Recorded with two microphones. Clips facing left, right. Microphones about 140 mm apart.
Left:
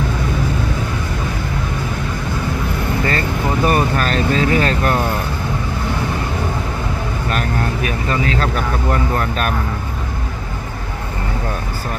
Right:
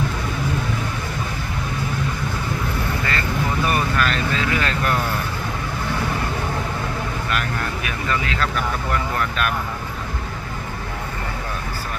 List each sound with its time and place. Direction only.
3.0 s vehicle: 35° left (ahead or behind)
7.2 s vehicle: 35° left (ahead or behind)